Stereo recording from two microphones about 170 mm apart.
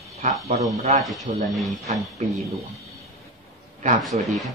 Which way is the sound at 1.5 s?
Centre (ahead or behind).